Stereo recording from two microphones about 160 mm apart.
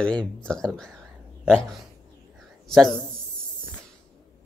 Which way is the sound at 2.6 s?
Centre (ahead or behind).